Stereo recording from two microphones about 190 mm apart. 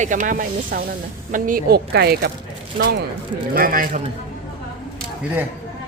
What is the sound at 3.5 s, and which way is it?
Speech, 50° right (ahead or behind).